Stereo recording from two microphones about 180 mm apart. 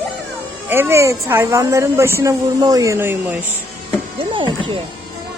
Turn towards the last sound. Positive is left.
turn(degrees=-25)  # may be behind; listen again after turning